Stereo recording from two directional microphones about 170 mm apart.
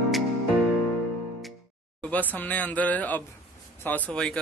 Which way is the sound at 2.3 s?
10° left (ahead or behind).